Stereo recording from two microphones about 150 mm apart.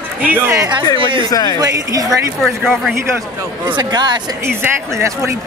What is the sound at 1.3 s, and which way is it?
Speech, 25° left (ahead or behind).